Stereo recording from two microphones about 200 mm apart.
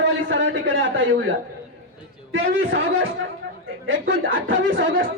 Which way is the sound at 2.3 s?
75° right (ahead or behind).